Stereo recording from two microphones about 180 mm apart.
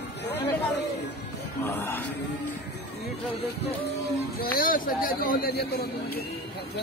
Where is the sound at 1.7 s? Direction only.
15° left (ahead or behind).